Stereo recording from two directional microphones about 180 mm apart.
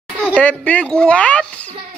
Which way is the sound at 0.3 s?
10° left (ahead or behind).